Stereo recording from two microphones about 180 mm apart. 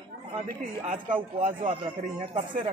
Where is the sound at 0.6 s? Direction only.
45° right (ahead or behind).